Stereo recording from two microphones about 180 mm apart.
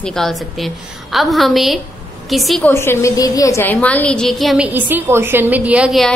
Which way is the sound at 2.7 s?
15° left (ahead or behind).